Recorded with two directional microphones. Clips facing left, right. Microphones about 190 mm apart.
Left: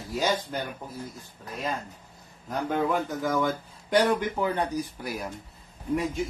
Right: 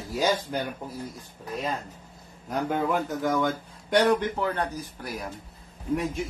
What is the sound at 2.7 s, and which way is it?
Speech, centre (ahead or behind).